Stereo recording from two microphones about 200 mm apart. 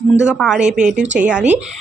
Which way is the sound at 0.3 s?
5° right (ahead or behind).